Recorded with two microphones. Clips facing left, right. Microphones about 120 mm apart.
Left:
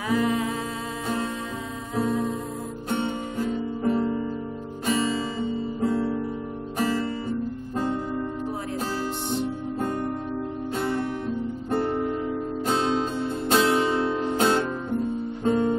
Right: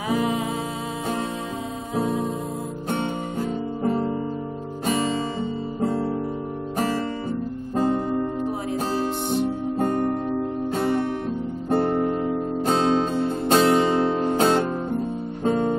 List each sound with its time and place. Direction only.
0.1 s music: 20° right (ahead or behind)
2.0 s music: 25° right (ahead or behind)
2.9 s music: 35° right (ahead or behind)
4.8 s guitar: 40° right (ahead or behind)
6.8 s music: 35° right (ahead or behind)
7.7 s guitar: 35° right (ahead or behind)
8.7 s music: 30° right (ahead or behind)
9.8 s music: 45° right (ahead or behind)